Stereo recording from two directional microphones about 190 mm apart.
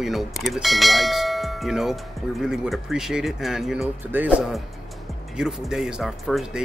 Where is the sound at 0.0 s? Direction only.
Centre (ahead or behind).